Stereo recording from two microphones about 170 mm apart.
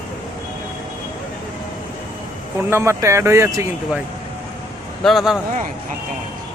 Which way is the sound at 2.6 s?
15° right (ahead or behind).